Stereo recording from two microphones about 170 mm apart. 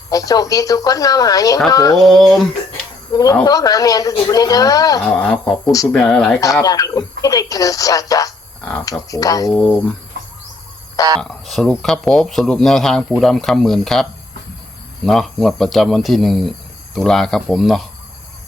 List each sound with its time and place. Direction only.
0.1 s speech: 20° left (ahead or behind)
2.0 s speech: centre (ahead or behind)
3.1 s speech: 20° left (ahead or behind)
5.2 s speech: 5° left (ahead or behind)
6.4 s speech: 20° left (ahead or behind)
11.2 s speech: centre (ahead or behind)